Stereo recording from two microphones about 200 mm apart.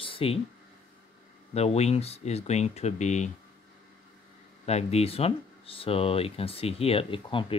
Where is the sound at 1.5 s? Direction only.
30° left (ahead or behind).